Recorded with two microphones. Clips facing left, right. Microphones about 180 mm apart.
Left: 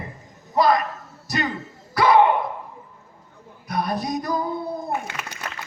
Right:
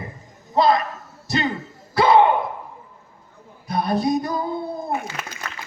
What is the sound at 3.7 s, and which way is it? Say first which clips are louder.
Speech: right 4 dB; 25° right (ahead or behind).